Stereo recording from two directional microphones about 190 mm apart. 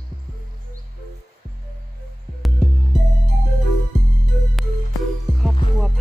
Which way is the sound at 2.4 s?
Centre (ahead or behind).